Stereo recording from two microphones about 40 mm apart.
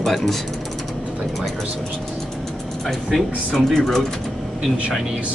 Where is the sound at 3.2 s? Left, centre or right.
Centre.